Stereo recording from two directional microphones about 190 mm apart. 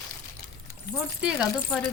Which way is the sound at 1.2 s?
Centre (ahead or behind).